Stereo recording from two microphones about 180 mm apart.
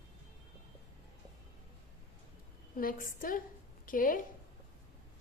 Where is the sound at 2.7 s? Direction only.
50° left (ahead or behind).